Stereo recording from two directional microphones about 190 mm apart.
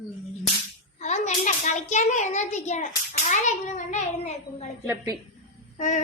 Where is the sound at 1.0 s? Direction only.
40° left (ahead or behind).